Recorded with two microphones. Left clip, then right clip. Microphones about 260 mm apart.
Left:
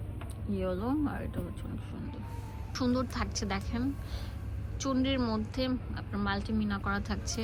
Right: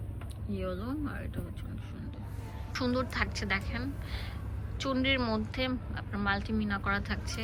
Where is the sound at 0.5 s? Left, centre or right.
Centre.